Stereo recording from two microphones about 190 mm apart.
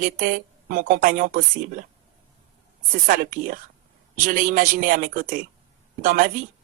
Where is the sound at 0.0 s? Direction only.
45° right (ahead or behind).